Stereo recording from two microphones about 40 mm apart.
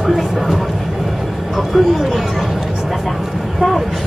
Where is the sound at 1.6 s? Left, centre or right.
Centre.